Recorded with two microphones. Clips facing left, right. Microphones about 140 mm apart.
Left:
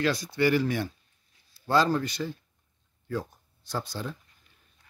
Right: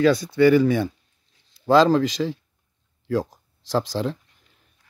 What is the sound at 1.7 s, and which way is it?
Speech, 90° right.